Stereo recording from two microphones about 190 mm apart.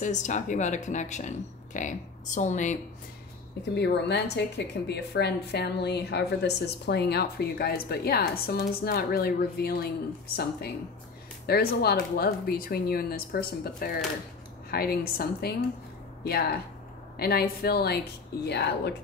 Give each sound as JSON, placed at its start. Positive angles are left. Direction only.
{"t": 0.0, "sound": "speech", "side_deg": 40}
{"t": 3.7, "sound": "a woman's voice", "side_deg": 60}